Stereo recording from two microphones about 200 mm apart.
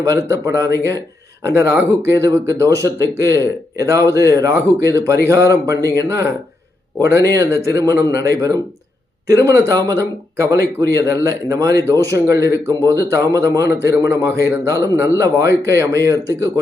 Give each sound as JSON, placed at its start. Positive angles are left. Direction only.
{"t": 0.0, "sound": "speech", "side_deg": -15}